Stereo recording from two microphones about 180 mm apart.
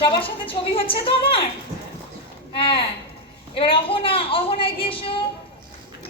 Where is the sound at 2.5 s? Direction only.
30° left (ahead or behind).